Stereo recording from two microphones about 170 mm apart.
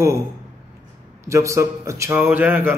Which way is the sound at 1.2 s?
15° right (ahead or behind).